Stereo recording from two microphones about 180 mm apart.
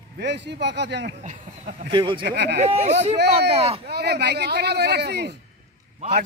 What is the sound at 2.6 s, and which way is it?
Speech, 40° right (ahead or behind).